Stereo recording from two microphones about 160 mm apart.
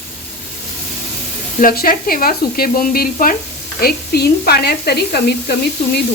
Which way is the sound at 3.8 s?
75° left (ahead or behind).